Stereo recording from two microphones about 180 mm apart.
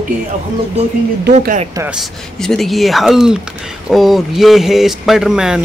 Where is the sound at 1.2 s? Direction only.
55° right (ahead or behind).